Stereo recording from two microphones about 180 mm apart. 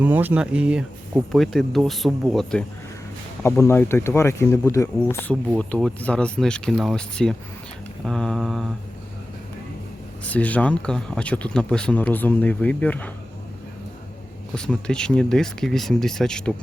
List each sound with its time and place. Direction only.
0.0 s speech: 10° right (ahead or behind)
10.2 s speech: 10° left (ahead or behind)
14.5 s speech: 5° left (ahead or behind)